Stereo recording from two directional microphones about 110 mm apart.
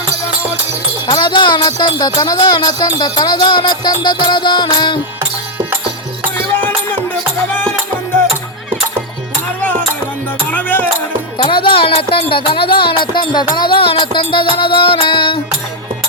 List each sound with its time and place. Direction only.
1.2 s music: 45° left (ahead or behind)
6.3 s music: 20° left (ahead or behind)
10.5 s music: 15° left (ahead or behind)
11.4 s speech: 50° left (ahead or behind)
13.6 s music: 50° left (ahead or behind)